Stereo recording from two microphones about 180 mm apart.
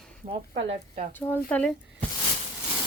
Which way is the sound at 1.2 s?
5° left (ahead or behind).